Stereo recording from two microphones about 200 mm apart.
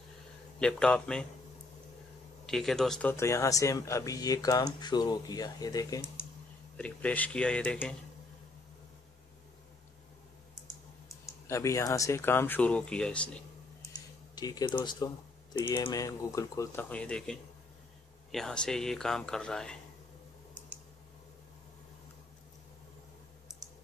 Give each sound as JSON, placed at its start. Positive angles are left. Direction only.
{"t": 0.6, "sound": "speech", "side_deg": 5}
{"t": 2.4, "sound": "speech", "side_deg": 0}
{"t": 6.8, "sound": "speech", "side_deg": 5}
{"t": 11.1, "sound": "speech", "side_deg": 15}
{"t": 14.3, "sound": "speech", "side_deg": 20}